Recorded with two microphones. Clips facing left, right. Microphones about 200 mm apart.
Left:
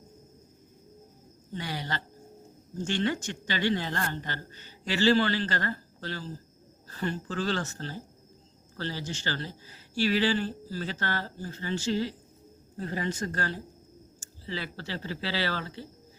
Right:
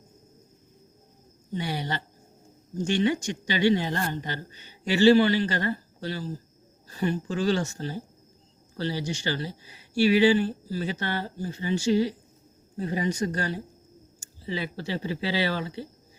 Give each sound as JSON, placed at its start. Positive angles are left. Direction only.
{"t": 1.5, "sound": "speech", "side_deg": -15}